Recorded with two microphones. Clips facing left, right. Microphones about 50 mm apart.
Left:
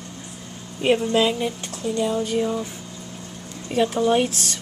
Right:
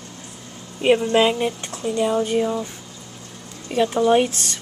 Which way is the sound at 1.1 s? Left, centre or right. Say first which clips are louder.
Right 3 dB; right.